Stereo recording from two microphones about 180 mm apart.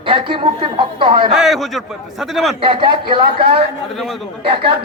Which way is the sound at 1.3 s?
Centre (ahead or behind).